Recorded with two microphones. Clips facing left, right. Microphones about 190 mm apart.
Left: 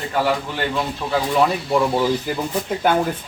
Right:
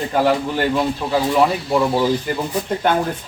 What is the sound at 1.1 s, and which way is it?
Speech, 5° right (ahead or behind).